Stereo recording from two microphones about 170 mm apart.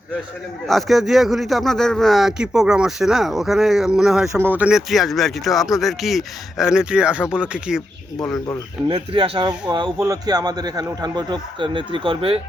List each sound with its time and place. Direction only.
0.7 s a man's voice: centre (ahead or behind)
4.3 s a man's voice: 15° right (ahead or behind)
8.9 s a man's voice: 35° right (ahead or behind)